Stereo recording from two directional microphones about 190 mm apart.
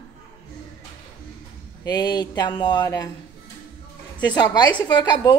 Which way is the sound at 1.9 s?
20° left (ahead or behind).